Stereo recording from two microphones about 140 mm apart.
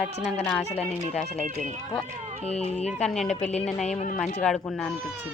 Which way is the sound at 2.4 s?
50° left (ahead or behind).